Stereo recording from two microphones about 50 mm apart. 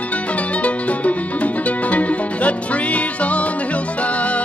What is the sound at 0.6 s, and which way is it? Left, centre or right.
Music, left.